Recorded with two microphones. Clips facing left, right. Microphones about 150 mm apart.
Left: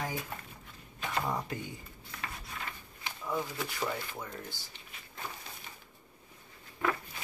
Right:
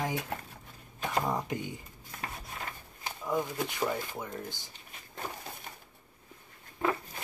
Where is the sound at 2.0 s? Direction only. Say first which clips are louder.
Right 2 dB; 40° right (ahead or behind).